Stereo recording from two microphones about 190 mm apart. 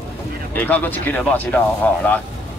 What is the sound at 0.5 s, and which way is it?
Speech, 10° left (ahead or behind).